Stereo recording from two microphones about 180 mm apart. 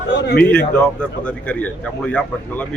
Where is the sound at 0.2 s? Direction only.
65° left (ahead or behind).